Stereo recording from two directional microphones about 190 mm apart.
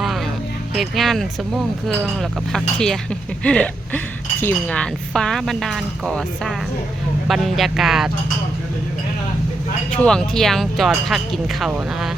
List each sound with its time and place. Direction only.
0.0 s music: centre (ahead or behind)
0.7 s speech: centre (ahead or behind)
9.9 s speech: 5° left (ahead or behind)